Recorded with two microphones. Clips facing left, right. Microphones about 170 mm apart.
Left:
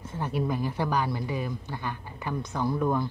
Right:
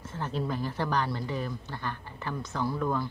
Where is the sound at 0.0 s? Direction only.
15° left (ahead or behind).